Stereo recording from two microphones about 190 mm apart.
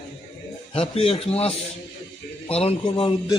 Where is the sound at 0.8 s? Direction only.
30° left (ahead or behind).